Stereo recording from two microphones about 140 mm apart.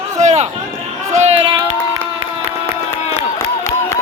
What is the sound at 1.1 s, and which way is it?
Speech, 55° right (ahead or behind).